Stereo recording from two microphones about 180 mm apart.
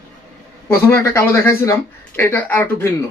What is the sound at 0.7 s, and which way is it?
Speech, 15° left (ahead or behind).